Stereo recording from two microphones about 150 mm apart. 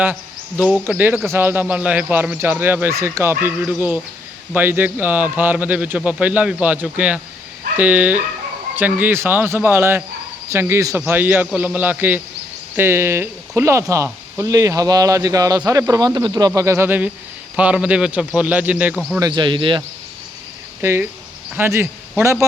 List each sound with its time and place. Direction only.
0.0 s speech: 10° right (ahead or behind)
19.2 s speech: 30° right (ahead or behind)
20.8 s speech: 15° right (ahead or behind)